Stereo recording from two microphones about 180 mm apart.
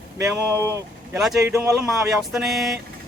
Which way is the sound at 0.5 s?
15° right (ahead or behind).